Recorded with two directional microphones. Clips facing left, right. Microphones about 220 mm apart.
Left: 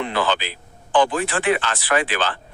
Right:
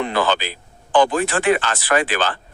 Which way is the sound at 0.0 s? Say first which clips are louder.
Right 2 dB; 45° right (ahead or behind).